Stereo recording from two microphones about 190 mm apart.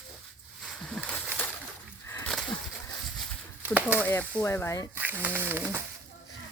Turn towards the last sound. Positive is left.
turn(degrees=-10)  # may be behind; listen again after turning